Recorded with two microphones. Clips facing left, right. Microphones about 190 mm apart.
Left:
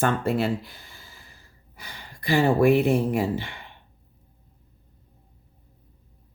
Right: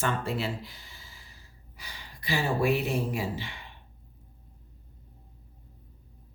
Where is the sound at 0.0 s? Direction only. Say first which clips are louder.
Left 7 dB; 55° left (ahead or behind).